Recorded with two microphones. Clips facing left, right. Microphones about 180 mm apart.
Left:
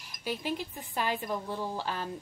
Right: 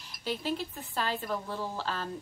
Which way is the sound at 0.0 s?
10° left (ahead or behind).